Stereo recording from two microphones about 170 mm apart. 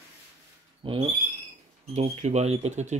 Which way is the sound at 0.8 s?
30° right (ahead or behind).